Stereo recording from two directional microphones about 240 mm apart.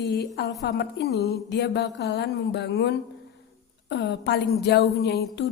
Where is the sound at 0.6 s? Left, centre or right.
Left.